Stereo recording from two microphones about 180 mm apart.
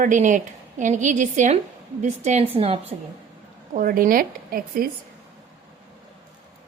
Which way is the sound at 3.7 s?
50° right (ahead or behind).